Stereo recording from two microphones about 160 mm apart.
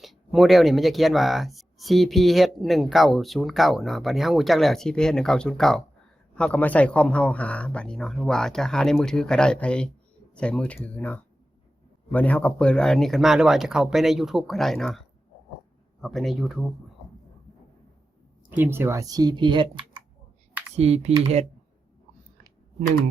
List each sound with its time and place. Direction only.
0.0 s speech: centre (ahead or behind)
18.5 s speech: 15° right (ahead or behind); by 20.0 s 30° right (ahead or behind)
20.7 s speech: 40° right (ahead or behind)